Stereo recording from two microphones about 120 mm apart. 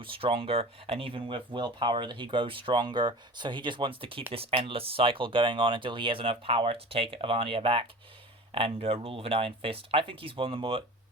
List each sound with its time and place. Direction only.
0.0 s speech: 45° right (ahead or behind)